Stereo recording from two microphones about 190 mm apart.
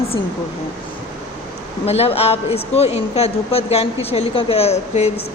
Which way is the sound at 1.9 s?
30° left (ahead or behind).